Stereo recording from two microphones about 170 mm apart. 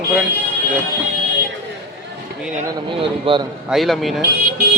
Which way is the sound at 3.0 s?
30° right (ahead or behind).